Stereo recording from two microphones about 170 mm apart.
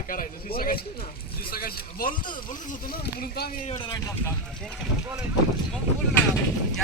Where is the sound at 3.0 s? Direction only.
65° left (ahead or behind).